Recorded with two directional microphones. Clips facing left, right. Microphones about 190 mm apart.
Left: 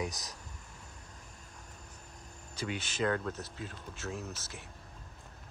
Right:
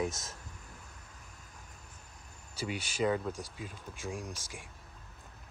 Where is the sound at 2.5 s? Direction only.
10° right (ahead or behind).